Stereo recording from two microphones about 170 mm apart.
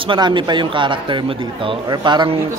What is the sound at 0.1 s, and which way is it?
Speech, 30° right (ahead or behind).